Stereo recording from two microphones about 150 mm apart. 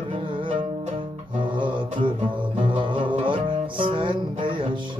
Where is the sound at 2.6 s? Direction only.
35° right (ahead or behind).